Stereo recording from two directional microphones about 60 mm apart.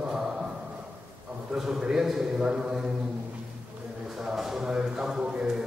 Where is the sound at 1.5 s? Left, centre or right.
Centre.